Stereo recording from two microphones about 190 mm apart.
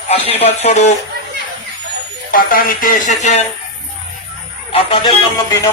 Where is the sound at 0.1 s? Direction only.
30° left (ahead or behind).